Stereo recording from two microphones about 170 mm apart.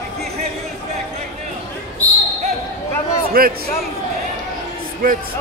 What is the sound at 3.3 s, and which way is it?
Speech, 60° right (ahead or behind).